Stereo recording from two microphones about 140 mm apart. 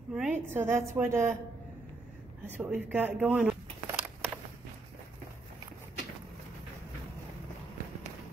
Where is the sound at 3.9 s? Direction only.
10° right (ahead or behind).